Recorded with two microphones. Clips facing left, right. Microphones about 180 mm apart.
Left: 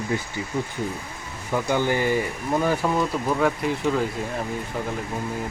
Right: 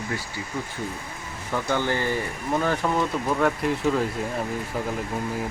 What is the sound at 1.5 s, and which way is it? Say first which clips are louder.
Speech: left 3 dB; 15° left (ahead or behind).